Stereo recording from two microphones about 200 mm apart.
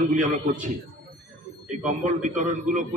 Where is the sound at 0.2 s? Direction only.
40° right (ahead or behind).